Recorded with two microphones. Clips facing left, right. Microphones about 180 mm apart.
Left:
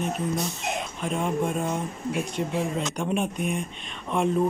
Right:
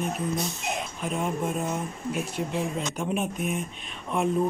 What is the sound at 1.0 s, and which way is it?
Speech, 5° right (ahead or behind).